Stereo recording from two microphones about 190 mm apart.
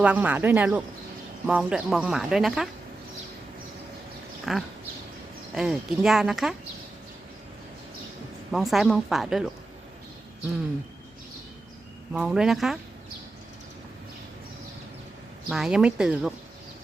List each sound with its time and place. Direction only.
0.0 s speech: 10° right (ahead or behind)
4.5 s speech: centre (ahead or behind)
8.5 s speech: centre (ahead or behind)
12.1 s speech: 5° right (ahead or behind)
15.4 s speech: centre (ahead or behind)